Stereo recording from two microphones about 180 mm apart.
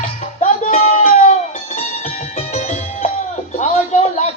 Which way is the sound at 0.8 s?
35° left (ahead or behind).